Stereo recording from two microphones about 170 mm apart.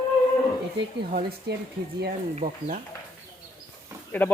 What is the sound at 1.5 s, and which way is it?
Speech, 75° right (ahead or behind).